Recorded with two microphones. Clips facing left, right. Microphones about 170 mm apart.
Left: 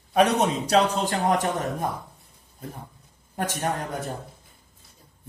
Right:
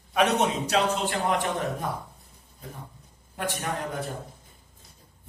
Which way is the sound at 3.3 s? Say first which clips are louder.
Left 3 dB; 45° left (ahead or behind).